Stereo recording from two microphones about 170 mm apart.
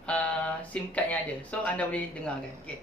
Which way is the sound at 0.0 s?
10° left (ahead or behind).